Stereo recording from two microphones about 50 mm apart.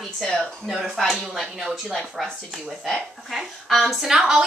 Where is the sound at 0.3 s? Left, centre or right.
Centre.